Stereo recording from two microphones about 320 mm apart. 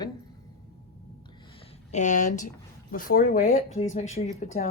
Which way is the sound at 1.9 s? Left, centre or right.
Left.